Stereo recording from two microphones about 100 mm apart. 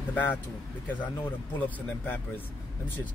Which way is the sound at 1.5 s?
15° left (ahead or behind).